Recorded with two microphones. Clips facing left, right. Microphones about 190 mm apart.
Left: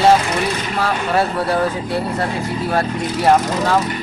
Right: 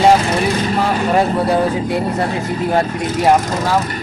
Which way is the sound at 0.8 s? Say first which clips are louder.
Right 2 dB; 15° right (ahead or behind).